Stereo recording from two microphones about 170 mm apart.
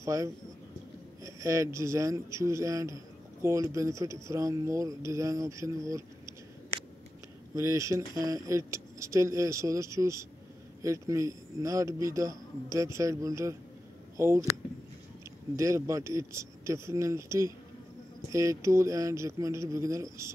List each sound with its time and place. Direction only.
0.0 s a man's voice: 20° right (ahead or behind)
7.5 s a man's voice: 20° right (ahead or behind)
15.5 s speech: 20° right (ahead or behind)